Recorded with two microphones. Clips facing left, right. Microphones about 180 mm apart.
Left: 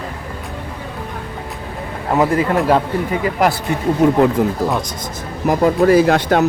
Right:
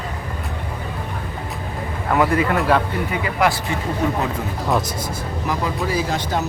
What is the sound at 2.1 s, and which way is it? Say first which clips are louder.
Speech: left 3 dB; 30° left (ahead or behind).